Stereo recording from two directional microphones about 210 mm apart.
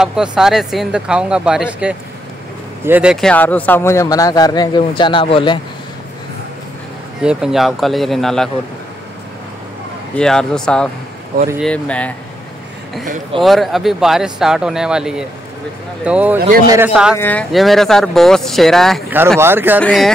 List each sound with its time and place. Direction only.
0.0 s a man's voice: 5° right (ahead or behind); by 5.6 s 25° left (ahead or behind)
7.2 s speech: 5° right (ahead or behind)
10.1 s speech: 5° left (ahead or behind)
13.4 s speech: centre (ahead or behind)
16.3 s speech: 45° right (ahead or behind)
16.6 s speech: 10° right (ahead or behind)
17.2 s speech: 5° left (ahead or behind)
19.1 s speech: 10° right (ahead or behind)
19.8 s speech: 5° left (ahead or behind)